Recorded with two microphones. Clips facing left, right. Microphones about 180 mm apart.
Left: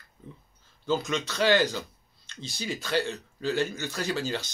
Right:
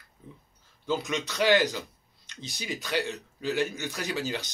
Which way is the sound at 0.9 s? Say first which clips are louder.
Left 2 dB; 15° right (ahead or behind).